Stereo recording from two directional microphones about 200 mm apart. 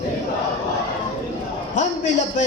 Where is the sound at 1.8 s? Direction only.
40° left (ahead or behind).